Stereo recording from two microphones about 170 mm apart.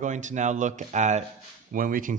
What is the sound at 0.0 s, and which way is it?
Speech, 45° right (ahead or behind).